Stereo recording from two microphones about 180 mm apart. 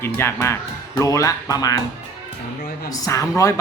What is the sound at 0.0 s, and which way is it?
A man's voice, 15° left (ahead or behind).